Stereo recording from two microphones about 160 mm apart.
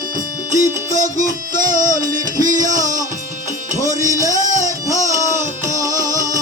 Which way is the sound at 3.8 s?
20° right (ahead or behind).